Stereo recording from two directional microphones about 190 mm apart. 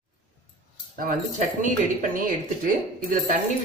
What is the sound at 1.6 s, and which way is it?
Speech, 45° right (ahead or behind).